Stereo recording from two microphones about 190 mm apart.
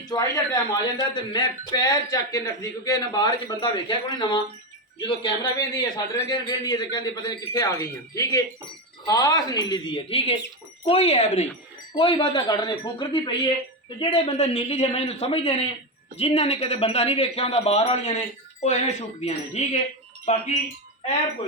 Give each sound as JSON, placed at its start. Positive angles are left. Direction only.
{"t": 0.1, "sound": "speech", "side_deg": 20}